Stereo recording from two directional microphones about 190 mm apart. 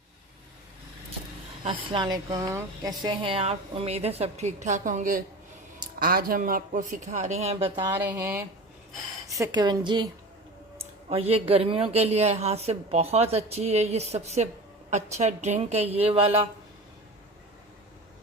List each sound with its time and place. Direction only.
1.6 s speech: 25° right (ahead or behind)
7.9 s a woman's voice: 10° right (ahead or behind); by 16.3 s 30° right (ahead or behind)